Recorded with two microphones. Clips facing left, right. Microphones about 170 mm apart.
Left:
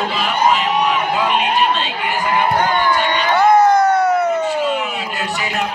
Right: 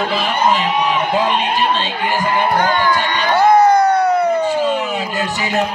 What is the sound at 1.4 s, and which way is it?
Speech, 35° right (ahead or behind).